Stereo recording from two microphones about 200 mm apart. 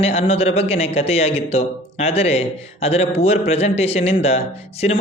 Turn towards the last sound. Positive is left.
turn(degrees=30)  # may be behind; listen again after turning